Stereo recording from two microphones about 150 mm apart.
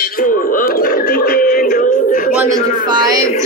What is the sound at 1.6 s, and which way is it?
Music, 60° left (ahead or behind).